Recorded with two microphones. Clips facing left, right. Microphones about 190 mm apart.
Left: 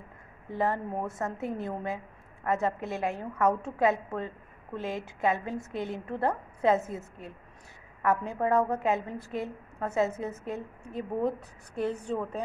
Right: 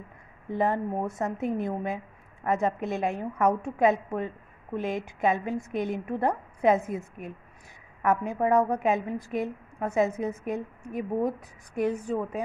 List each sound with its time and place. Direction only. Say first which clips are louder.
0.5 s a woman's voice: right 3 dB; 15° right (ahead or behind)